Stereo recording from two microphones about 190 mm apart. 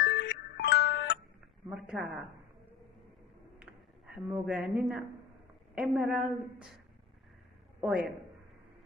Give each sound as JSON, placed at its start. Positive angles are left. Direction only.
{"t": 0.0, "sound": "music", "side_deg": 55}
{"t": 1.7, "sound": "speech", "side_deg": -5}
{"t": 3.5, "sound": "a sound", "side_deg": 0}
{"t": 5.8, "sound": "a woman's voice", "side_deg": 0}